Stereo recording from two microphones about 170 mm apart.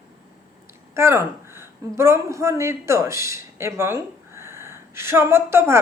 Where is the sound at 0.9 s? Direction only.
15° right (ahead or behind).